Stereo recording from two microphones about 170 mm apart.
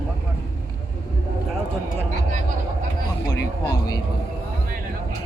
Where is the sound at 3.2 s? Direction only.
20° left (ahead or behind).